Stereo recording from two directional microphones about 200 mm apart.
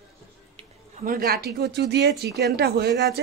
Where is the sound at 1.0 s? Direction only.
45° right (ahead or behind).